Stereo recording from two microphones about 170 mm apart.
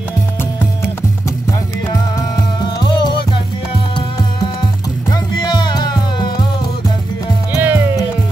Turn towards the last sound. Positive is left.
turn(degrees=-10)  # may be behind; listen again after turning